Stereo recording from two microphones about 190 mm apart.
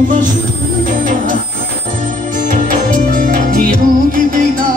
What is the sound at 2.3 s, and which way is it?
Music, 45° right (ahead or behind).